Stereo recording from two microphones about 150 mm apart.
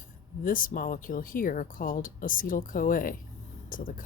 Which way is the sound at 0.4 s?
65° left (ahead or behind).